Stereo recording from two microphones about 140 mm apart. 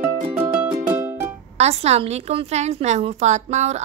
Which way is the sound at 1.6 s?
50° right (ahead or behind).